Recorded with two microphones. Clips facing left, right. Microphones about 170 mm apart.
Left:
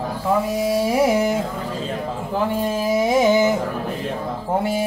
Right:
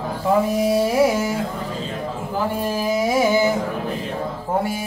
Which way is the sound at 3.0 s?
20° left (ahead or behind).